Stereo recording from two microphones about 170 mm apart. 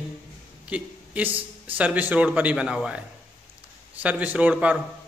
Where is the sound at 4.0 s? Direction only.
10° right (ahead or behind).